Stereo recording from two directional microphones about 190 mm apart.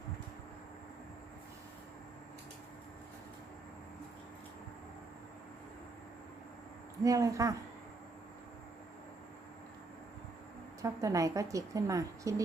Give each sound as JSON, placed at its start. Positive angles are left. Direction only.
{"t": 7.0, "sound": "a woman's voice", "side_deg": -15}
{"t": 10.8, "sound": "a woman's voice", "side_deg": -15}